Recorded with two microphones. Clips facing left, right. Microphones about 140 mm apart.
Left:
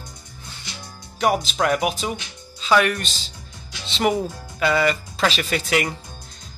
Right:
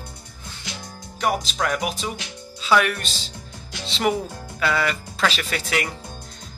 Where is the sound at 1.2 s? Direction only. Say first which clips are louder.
Left 3 dB; centre (ahead or behind).